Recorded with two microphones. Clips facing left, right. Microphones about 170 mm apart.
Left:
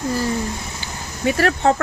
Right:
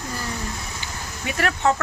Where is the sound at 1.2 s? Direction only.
35° left (ahead or behind).